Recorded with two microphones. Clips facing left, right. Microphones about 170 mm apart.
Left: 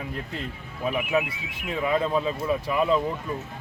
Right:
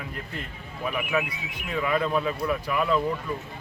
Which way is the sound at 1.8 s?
20° left (ahead or behind).